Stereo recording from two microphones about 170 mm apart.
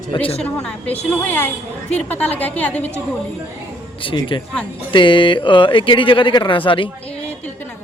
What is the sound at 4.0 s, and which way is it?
Speech, 30° left (ahead or behind).